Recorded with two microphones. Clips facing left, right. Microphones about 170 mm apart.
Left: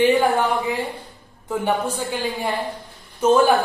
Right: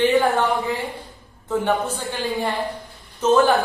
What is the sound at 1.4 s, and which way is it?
A man's voice, 10° left (ahead or behind).